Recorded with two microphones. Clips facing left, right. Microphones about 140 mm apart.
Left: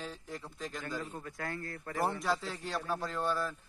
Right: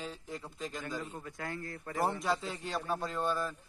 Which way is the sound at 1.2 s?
20° right (ahead or behind).